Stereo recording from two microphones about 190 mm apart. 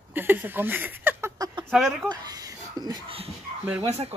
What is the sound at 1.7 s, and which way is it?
Speech, centre (ahead or behind).